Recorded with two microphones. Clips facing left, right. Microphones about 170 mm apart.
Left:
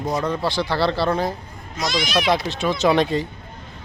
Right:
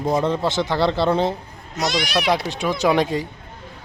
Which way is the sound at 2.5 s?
15° right (ahead or behind).